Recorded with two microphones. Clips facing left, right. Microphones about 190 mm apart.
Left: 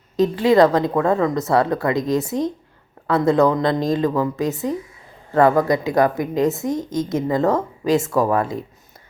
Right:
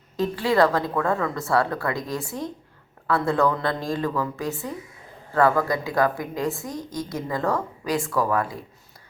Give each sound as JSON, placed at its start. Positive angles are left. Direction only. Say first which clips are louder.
{"t": 0.2, "sound": "a woman's voice", "louder": "left 6 dB", "side_deg": 20}